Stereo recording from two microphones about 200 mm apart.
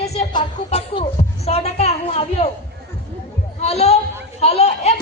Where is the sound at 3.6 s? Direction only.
30° left (ahead or behind).